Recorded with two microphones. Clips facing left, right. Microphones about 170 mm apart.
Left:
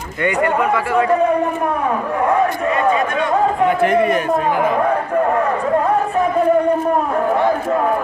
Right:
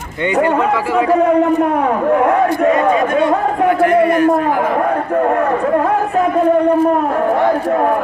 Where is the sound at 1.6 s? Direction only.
65° right (ahead or behind).